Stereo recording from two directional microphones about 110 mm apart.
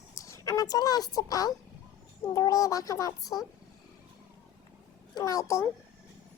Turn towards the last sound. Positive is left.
turn(degrees=30)  # may be behind; listen again after turning